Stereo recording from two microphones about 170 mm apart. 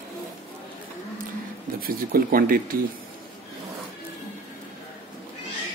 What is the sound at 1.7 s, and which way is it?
Speech, 60° right (ahead or behind).